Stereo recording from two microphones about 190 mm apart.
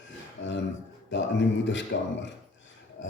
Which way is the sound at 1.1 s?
70° left (ahead or behind).